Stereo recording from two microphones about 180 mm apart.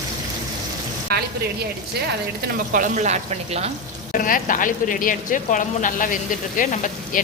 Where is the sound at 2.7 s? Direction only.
45° right (ahead or behind).